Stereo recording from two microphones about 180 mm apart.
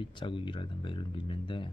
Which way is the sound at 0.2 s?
25° left (ahead or behind).